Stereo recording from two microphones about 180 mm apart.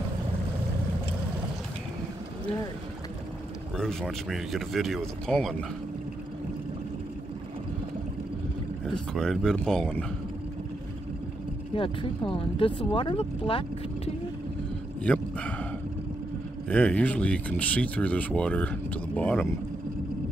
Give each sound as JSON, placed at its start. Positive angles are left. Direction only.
{"t": 3.7, "sound": "speech", "side_deg": 0}
{"t": 9.1, "sound": "speech", "side_deg": 0}
{"t": 11.7, "sound": "speech", "side_deg": 30}
{"t": 15.0, "sound": "speech", "side_deg": 5}
{"t": 16.6, "sound": "speech", "side_deg": 5}